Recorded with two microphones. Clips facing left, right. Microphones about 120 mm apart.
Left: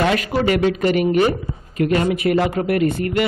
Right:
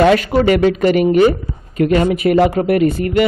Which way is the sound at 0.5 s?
50° right (ahead or behind).